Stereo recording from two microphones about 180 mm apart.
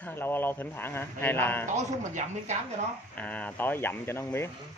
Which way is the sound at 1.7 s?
40° right (ahead or behind).